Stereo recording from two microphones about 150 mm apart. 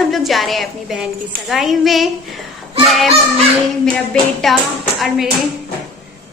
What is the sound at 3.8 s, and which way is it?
A woman's voice, 5° left (ahead or behind).